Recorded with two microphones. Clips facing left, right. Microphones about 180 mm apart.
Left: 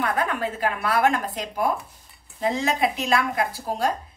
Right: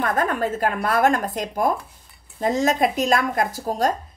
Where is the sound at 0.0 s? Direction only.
45° right (ahead or behind).